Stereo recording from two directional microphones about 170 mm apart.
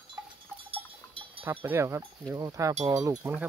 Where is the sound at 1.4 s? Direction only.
15° right (ahead or behind).